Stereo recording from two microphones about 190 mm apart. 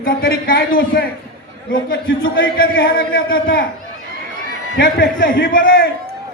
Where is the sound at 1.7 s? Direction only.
90° left.